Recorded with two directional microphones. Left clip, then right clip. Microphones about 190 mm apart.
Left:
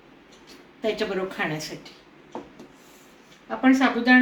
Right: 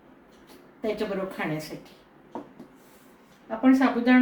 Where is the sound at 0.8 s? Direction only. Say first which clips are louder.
Left 3 dB; 10° right (ahead or behind).